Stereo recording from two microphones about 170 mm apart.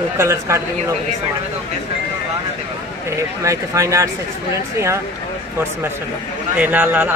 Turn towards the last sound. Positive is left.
turn(degrees=-10)  # may be behind; listen again after turning